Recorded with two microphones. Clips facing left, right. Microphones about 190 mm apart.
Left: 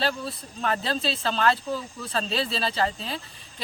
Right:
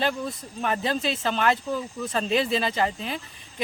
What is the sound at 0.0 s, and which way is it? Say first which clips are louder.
Speech: right 2 dB; 15° right (ahead or behind).